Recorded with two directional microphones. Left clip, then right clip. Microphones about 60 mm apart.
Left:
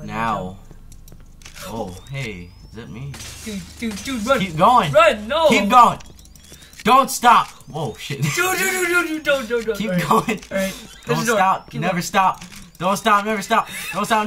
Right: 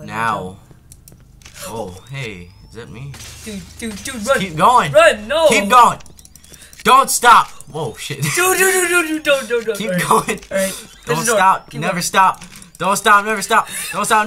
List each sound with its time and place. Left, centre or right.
0.0 s speech: centre
1.6 s speech: centre
3.1 s speech: centre
4.6 s speech: centre
4.9 s speech: centre
5.5 s speech: centre
7.4 s speech: centre
12.4 s a sound: centre
12.7 s speech: centre
13.7 s speech: centre